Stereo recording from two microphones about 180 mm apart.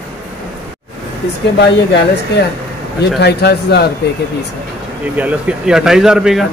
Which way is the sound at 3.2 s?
65° left (ahead or behind).